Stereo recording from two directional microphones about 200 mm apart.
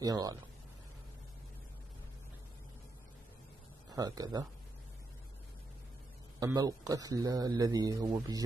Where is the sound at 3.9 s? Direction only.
20° right (ahead or behind).